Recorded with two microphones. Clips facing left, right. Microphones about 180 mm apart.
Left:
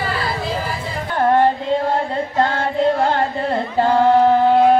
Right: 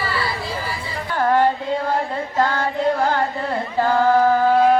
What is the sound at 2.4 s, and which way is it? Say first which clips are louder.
Carnatic music: left 2 dB; 25° left (ahead or behind).